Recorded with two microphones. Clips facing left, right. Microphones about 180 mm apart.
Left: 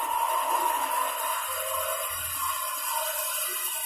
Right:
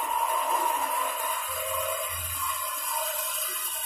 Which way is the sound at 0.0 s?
Centre (ahead or behind).